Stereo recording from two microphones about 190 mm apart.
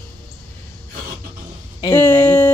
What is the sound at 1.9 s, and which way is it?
Speech, 10° left (ahead or behind).